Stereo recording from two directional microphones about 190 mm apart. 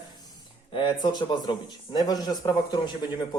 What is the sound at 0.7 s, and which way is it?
Speech, 25° left (ahead or behind).